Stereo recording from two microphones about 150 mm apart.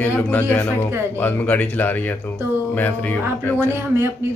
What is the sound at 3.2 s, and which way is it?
Speech, 15° right (ahead or behind).